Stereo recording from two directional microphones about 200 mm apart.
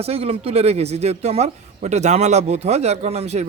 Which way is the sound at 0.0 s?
30° right (ahead or behind).